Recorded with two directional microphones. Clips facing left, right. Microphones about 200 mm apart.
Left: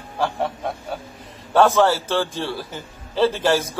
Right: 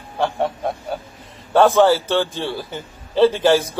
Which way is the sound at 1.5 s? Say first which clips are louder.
Right 3 dB; centre (ahead or behind).